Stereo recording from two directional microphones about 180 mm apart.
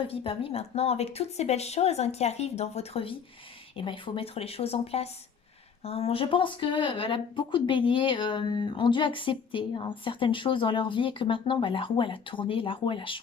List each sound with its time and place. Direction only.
0.1 s speech: 30° left (ahead or behind)